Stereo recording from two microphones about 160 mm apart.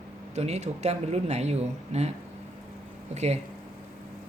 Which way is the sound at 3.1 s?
45° right (ahead or behind).